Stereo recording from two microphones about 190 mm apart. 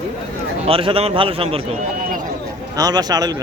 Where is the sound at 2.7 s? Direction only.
20° right (ahead or behind).